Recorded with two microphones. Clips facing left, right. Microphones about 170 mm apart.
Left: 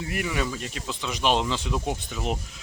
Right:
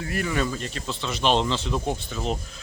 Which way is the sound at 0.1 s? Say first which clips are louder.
Right 3 dB; 15° left (ahead or behind).